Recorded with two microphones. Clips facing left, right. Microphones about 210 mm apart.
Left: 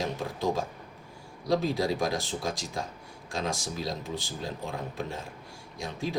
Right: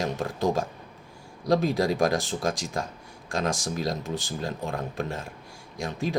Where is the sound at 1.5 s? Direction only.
45° right (ahead or behind).